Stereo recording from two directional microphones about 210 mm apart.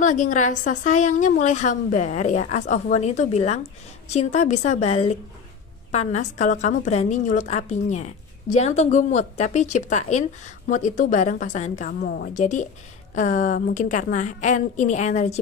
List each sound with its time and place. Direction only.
0.0 s a woman's voice: 35° left (ahead or behind)
12.0 s a woman's voice: 50° left (ahead or behind)